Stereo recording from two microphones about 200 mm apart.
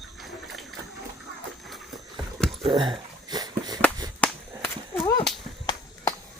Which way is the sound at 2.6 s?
25° right (ahead or behind).